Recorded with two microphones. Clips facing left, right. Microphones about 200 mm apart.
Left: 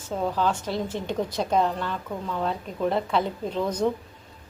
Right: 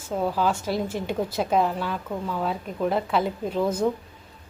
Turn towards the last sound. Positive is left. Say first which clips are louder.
# right 2 dB
turn(degrees=-5)  # may be behind; listen again after turning